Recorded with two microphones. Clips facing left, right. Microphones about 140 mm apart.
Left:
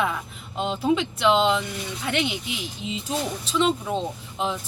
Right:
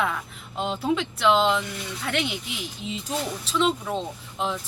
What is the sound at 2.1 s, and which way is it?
Speech, centre (ahead or behind).